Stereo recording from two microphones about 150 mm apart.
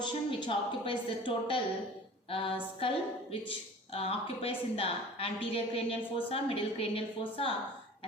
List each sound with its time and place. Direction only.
0.0 s a woman's voice: 30° left (ahead or behind)